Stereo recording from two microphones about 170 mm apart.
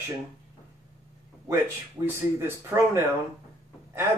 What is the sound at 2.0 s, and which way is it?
A man's voice, 10° right (ahead or behind).